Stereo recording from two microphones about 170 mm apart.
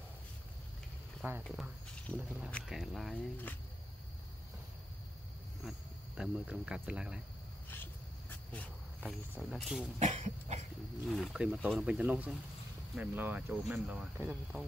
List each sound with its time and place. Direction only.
1.2 s speech: 10° right (ahead or behind)
2.1 s speech: 5° left (ahead or behind)
5.6 s speech: centre (ahead or behind)
7.7 s a sound: 10° left (ahead or behind)
9.4 s speech: centre (ahead or behind)
9.9 s cough: 45° right (ahead or behind)
11.1 s speech: 5° right (ahead or behind)